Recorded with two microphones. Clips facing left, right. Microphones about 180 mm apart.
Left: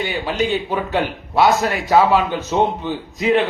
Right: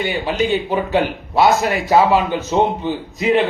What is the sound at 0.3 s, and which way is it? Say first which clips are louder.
Speech: right 1 dB; 50° right (ahead or behind).